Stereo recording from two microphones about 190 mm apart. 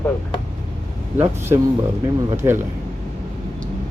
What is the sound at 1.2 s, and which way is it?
Speech, 10° right (ahead or behind).